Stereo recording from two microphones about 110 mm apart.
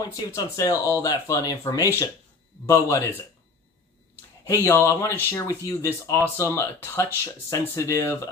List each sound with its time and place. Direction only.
0.0 s speech: 30° left (ahead or behind)
4.5 s speech: 20° left (ahead or behind)